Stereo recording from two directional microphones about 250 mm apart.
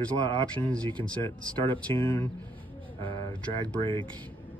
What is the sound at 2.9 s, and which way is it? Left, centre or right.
Speech, centre.